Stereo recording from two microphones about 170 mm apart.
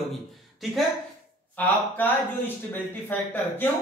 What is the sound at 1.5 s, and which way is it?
A man's voice, 10° left (ahead or behind).